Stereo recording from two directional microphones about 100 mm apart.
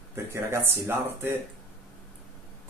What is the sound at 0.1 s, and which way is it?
Speech, 25° right (ahead or behind).